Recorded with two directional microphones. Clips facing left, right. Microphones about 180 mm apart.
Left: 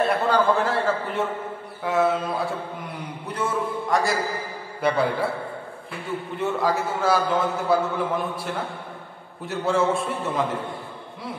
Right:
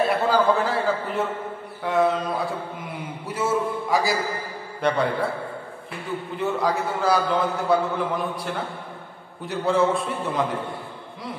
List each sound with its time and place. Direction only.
0.0 s a man's voice: centre (ahead or behind)